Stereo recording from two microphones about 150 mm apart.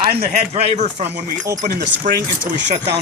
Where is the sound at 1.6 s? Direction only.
65° right (ahead or behind).